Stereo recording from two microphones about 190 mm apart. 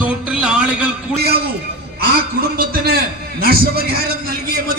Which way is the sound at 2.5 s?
55° right (ahead or behind).